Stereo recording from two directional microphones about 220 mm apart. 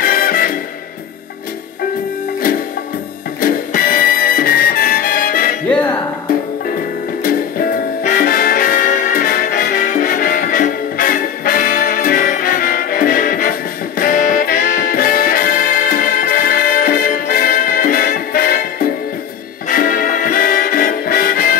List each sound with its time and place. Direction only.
0.0 s music: 40° left (ahead or behind)
3.3 s music: 40° left (ahead or behind)
5.7 s music: 5° left (ahead or behind)
7.2 s music: 40° left (ahead or behind)